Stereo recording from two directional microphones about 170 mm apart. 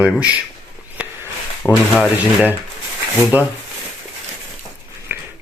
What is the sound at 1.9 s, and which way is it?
Speech, 5° right (ahead or behind).